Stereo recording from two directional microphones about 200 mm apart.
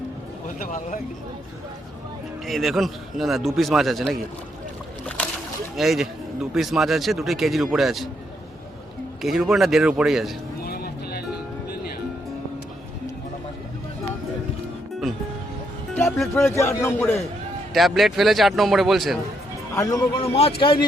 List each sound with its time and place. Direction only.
2.5 s speech: centre (ahead or behind)
5.7 s speech: centre (ahead or behind)
9.2 s speech: centre (ahead or behind)
10.6 s vehicle: 50° left (ahead or behind)
16.3 s speech: 15° left (ahead or behind)
17.7 s speech: centre (ahead or behind)
19.7 s speech: 15° left (ahead or behind)
20.2 s speech: 30° left (ahead or behind)